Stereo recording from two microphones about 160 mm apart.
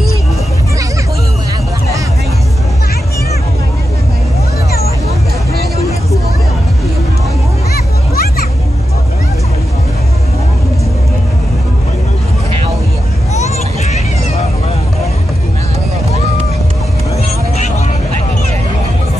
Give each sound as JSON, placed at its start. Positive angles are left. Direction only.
{"t": 7.7, "sound": "music", "side_deg": 70}
{"t": 13.3, "sound": "vehicle", "side_deg": 45}